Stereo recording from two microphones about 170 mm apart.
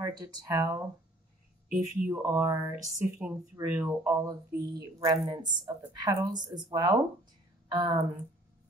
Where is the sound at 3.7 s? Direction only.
10° right (ahead or behind).